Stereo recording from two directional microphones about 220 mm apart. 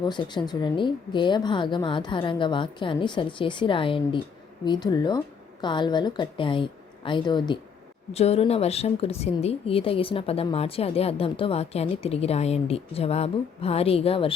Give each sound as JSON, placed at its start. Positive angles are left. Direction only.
{"t": 0.0, "sound": "a woman's voice", "side_deg": 20}